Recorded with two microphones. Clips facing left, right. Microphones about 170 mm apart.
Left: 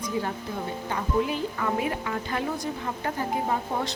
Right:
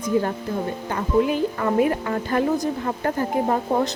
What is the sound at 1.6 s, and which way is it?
A woman's voice, 50° right (ahead or behind).